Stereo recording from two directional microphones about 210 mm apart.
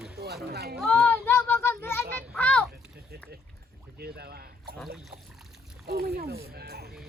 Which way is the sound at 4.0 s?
45° right (ahead or behind).